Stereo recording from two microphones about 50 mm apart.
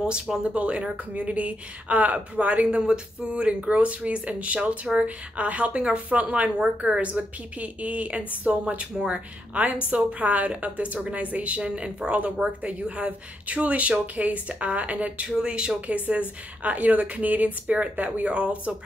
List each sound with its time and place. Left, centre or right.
0.4 s speech: right
2.8 s speech: centre
15.2 s speech: centre